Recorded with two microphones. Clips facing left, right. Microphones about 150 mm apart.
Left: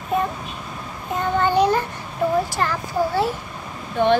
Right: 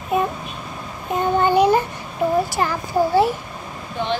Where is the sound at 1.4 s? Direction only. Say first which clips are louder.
Right 2 dB; 15° right (ahead or behind).